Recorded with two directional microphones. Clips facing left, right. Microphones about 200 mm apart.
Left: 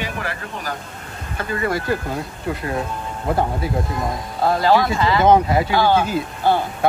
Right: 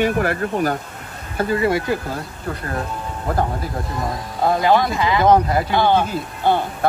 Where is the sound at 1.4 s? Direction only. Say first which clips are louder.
Right 4 dB; 25° right (ahead or behind).